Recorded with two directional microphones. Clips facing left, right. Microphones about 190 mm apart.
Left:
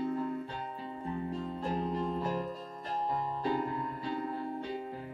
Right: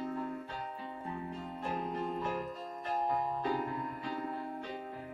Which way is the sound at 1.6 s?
35° left (ahead or behind).